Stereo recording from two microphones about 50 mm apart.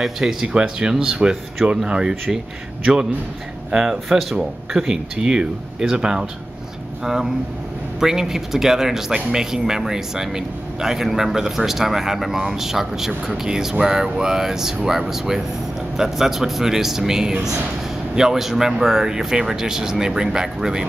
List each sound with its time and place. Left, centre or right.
0.0 s a man's voice: centre
3.9 s a man's voice: centre